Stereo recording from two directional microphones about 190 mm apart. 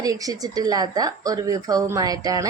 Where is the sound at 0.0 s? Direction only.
20° right (ahead or behind).